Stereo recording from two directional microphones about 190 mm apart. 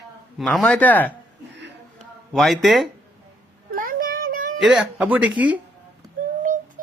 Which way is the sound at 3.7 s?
45° right (ahead or behind).